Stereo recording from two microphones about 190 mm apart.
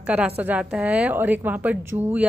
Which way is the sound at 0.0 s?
5° right (ahead or behind).